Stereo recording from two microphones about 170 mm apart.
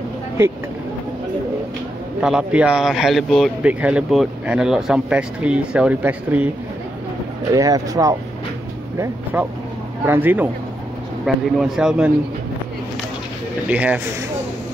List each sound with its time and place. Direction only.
2.2 s speech: 5° right (ahead or behind)
7.5 s speech: 20° right (ahead or behind)
13.7 s speech: 10° right (ahead or behind)